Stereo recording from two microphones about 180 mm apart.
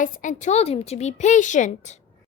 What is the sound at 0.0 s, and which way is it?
A woman's voice, 45° left (ahead or behind).